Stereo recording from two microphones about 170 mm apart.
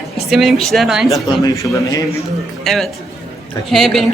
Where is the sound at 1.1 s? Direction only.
20° left (ahead or behind).